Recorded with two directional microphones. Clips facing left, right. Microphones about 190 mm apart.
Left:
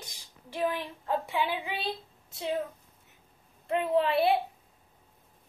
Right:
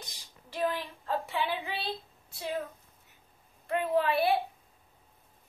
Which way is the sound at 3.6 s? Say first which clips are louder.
Left 2 dB; 25° left (ahead or behind).